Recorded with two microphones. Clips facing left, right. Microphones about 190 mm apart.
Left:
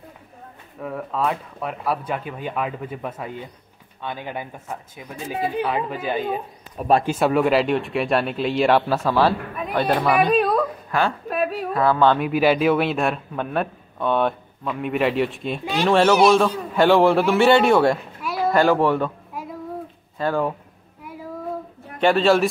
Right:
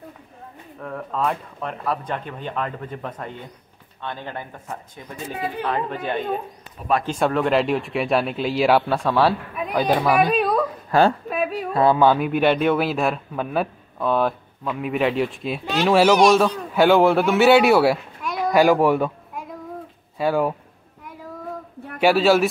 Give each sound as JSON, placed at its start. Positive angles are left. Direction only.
{"t": 0.7, "sound": "speech", "side_deg": 5}
{"t": 10.9, "sound": "a woman's voice", "side_deg": -35}
{"t": 11.2, "sound": "a sound", "side_deg": 0}
{"t": 11.7, "sound": "speech", "side_deg": -20}
{"t": 12.1, "sound": "speech", "side_deg": 0}
{"t": 16.2, "sound": "speech", "side_deg": 5}
{"t": 18.2, "sound": "a sound", "side_deg": 5}
{"t": 18.5, "sound": "speech", "side_deg": -10}
{"t": 20.2, "sound": "speech", "side_deg": -10}
{"t": 22.0, "sound": "speech", "side_deg": -5}